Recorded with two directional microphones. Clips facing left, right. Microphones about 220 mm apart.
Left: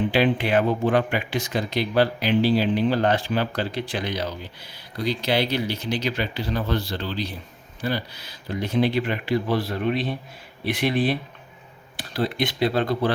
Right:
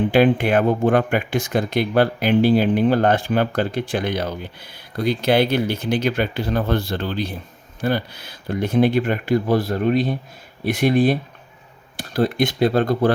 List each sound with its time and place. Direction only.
0.1 s speech: 50° right (ahead or behind)